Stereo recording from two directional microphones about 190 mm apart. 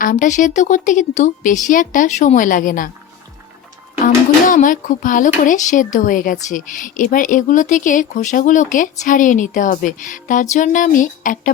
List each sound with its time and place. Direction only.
0.0 s speech: 45° left (ahead or behind)
4.0 s speech: 45° left (ahead or behind)